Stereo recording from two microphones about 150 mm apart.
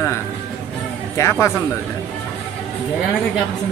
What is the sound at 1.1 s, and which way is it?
Speech, 20° left (ahead or behind).